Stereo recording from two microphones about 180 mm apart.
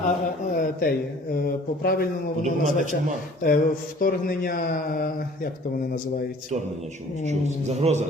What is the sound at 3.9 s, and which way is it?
Speech, 50° left (ahead or behind).